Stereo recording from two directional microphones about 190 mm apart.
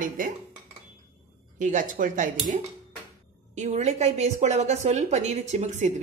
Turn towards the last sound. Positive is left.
turn(degrees=-35)  # may be behind; listen again after turning